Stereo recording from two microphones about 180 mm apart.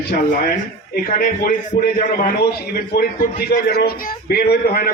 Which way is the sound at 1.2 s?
50° left (ahead or behind).